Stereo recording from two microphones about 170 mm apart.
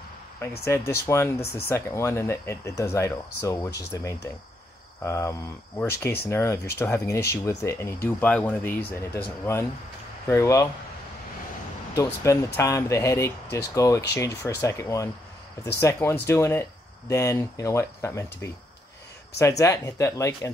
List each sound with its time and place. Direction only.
0.4 s speech: 15° left (ahead or behind)
11.9 s speech: 15° left (ahead or behind)
19.6 s speech: 20° left (ahead or behind)